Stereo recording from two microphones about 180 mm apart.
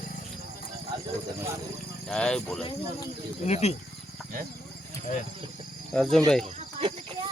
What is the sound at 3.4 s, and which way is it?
Music, 35° left (ahead or behind).